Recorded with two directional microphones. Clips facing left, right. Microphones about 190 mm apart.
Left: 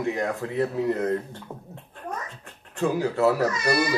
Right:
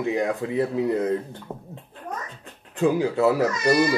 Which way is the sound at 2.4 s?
15° right (ahead or behind).